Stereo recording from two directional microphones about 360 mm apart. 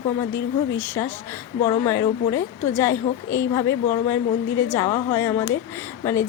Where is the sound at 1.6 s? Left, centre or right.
Centre.